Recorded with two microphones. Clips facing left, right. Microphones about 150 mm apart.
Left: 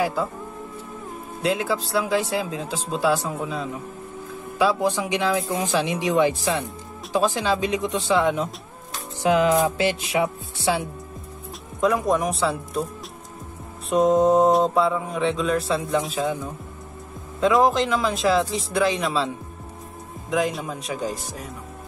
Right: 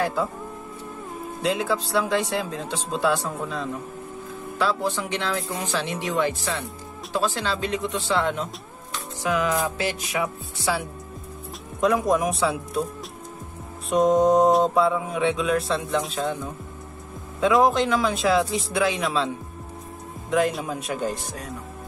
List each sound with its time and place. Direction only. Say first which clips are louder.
0.0 s music: left 1 dB; centre (ahead or behind)
1.4 s music: left 1 dB; centre (ahead or behind)
4.6 s speech: left 4 dB; 15° left (ahead or behind)
8.9 s music: left 5 dB; 25° left (ahead or behind)
11.8 s music: even; centre (ahead or behind)
13.8 s music: left 1 dB; centre (ahead or behind)